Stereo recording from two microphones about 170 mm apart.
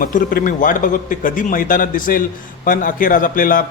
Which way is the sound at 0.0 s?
55° left (ahead or behind).